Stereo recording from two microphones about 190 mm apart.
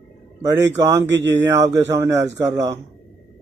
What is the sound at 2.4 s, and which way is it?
Speech, 15° right (ahead or behind).